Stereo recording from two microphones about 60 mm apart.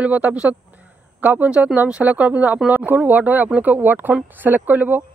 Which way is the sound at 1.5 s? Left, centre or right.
Centre.